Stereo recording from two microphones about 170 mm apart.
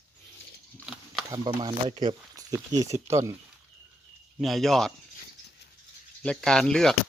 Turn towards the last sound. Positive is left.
turn(degrees=5)  # may be behind; listen again after turning